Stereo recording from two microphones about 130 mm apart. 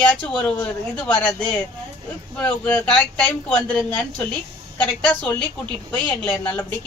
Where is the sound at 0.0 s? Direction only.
10° left (ahead or behind).